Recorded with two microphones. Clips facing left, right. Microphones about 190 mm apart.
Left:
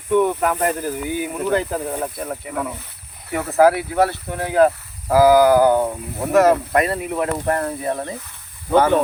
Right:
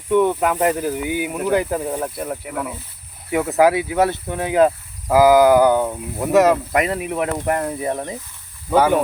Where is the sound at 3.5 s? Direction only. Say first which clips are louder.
Left 2 dB; 15° right (ahead or behind).